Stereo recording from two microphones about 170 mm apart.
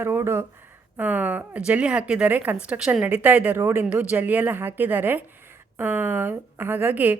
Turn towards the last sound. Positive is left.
turn(degrees=-10)  # may be behind; listen again after turning